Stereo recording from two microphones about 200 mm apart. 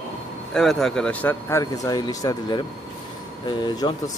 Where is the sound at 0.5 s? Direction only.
Centre (ahead or behind).